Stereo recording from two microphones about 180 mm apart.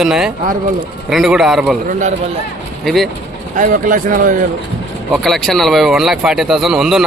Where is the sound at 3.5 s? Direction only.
50° right (ahead or behind).